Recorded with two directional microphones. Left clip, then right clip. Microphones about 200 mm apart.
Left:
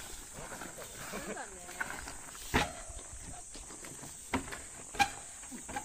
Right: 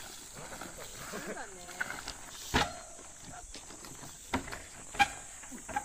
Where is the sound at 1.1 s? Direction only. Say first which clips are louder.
Right 1 dB; 40° right (ahead or behind).